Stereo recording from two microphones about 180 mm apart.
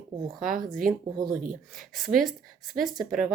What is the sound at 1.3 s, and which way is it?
Speech, 45° right (ahead or behind).